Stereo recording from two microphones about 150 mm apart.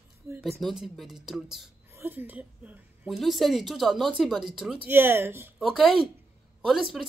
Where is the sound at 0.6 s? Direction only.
Centre (ahead or behind).